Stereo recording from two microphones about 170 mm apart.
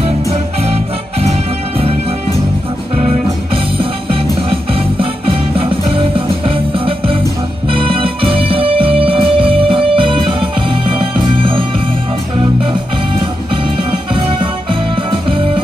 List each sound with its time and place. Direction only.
3.7 s music: 30° right (ahead or behind)
14.1 s music: 30° right (ahead or behind)